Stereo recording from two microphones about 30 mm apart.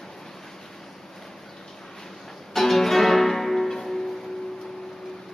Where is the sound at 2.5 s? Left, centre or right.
Centre.